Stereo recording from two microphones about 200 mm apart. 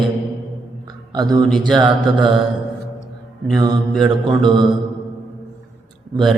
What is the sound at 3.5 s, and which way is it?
Mantra, 20° right (ahead or behind).